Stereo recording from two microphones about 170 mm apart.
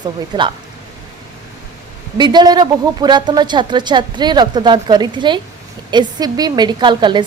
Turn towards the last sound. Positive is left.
turn(degrees=-25)  # may be behind; listen again after turning